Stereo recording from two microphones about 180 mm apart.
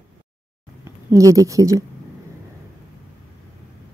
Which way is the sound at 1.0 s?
20° right (ahead or behind).